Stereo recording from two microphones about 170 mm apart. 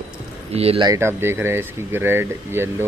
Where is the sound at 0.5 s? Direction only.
35° right (ahead or behind).